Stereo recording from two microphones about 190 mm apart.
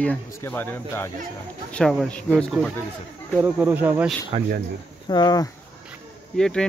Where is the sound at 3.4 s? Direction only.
10° right (ahead or behind).